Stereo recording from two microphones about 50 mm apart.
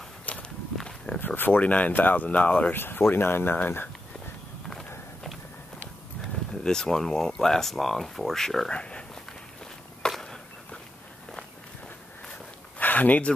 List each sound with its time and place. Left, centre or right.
0.3 s walk: left
0.7 s walk: centre
1.2 s speech: left
2.7 s speech: left
6.5 s speech: centre
8.7 s a sound: centre
12.7 s a sound: left